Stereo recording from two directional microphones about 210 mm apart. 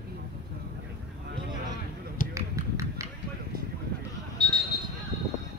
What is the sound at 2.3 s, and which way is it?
Run, 15° right (ahead or behind).